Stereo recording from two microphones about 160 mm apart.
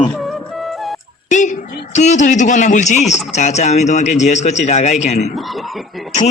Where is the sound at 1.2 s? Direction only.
50° left (ahead or behind).